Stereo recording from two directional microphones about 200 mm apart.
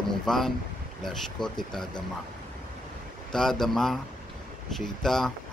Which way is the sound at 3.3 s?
Centre (ahead or behind).